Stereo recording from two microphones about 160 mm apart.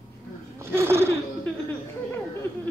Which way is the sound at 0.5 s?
15° right (ahead or behind).